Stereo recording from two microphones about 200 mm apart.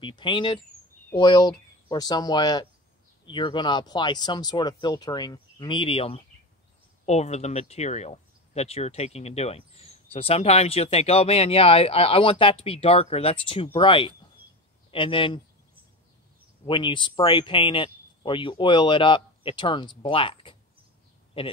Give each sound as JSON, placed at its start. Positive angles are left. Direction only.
{"t": 0.0, "sound": "speech", "side_deg": 25}
{"t": 16.6, "sound": "speech", "side_deg": 25}